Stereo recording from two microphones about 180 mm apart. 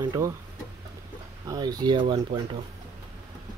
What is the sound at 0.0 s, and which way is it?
Speech, 20° right (ahead or behind).